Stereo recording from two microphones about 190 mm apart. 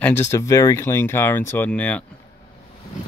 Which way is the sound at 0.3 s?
15° left (ahead or behind).